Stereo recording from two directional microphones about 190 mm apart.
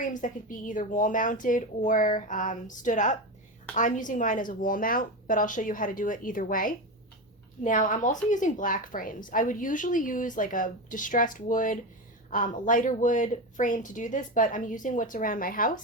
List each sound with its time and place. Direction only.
0.1 s a woman's voice: 45° left (ahead or behind)